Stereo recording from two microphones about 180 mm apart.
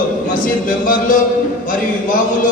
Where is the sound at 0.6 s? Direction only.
50° left (ahead or behind).